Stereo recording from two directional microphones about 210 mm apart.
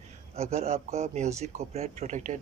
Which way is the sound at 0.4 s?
30° right (ahead or behind).